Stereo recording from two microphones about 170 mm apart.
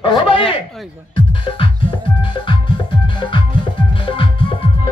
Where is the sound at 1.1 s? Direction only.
30° left (ahead or behind).